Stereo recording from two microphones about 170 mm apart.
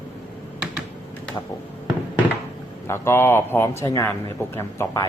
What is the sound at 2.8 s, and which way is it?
Speech, 15° left (ahead or behind).